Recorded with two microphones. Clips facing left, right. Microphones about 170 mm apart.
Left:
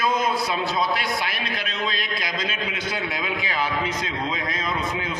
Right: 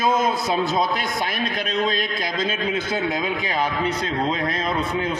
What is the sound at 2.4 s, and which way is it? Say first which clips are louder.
Speech: right 5 dB; 30° right (ahead or behind).